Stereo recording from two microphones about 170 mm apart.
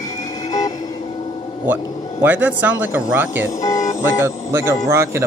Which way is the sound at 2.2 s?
10° right (ahead or behind).